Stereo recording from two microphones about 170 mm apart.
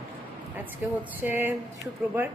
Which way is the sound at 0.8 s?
10° right (ahead or behind).